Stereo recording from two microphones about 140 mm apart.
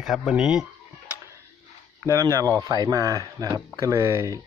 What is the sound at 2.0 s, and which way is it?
Speech, 25° right (ahead or behind).